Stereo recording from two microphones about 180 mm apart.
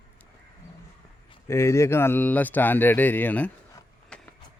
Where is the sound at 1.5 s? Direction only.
15° left (ahead or behind).